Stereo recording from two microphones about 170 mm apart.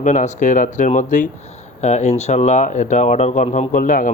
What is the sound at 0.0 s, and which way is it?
Speech, 45° left (ahead or behind).